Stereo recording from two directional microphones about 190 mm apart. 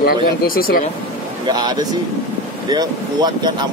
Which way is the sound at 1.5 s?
20° right (ahead or behind).